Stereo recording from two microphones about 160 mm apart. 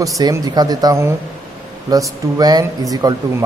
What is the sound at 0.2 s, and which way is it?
Speech, 25° right (ahead or behind).